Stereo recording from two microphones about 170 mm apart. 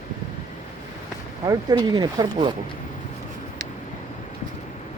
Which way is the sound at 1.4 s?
20° right (ahead or behind).